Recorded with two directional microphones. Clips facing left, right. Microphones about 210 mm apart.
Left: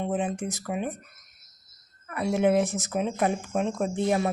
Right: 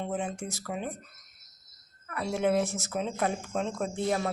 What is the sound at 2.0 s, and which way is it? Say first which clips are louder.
Speech: left 4 dB; 15° left (ahead or behind).